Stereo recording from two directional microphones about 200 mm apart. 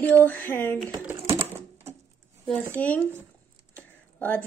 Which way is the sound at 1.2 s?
25° right (ahead or behind).